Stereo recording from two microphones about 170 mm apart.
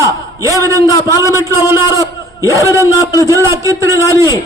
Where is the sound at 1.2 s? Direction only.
15° right (ahead or behind).